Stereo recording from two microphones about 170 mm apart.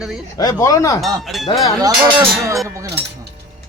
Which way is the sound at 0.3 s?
20° left (ahead or behind).